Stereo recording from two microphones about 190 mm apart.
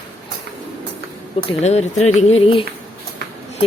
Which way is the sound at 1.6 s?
35° left (ahead or behind).